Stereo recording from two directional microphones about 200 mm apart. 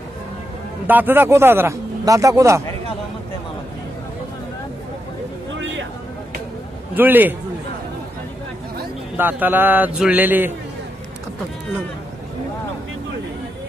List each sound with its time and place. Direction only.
0.8 s speech: 10° right (ahead or behind)
5.5 s a sound: 70° right (ahead or behind)
6.9 s a man's voice: 10° right (ahead or behind)
9.1 s speech: 10° right (ahead or behind)